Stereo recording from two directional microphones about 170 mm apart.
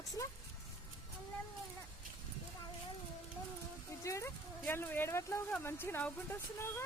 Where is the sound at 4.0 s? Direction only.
20° left (ahead or behind).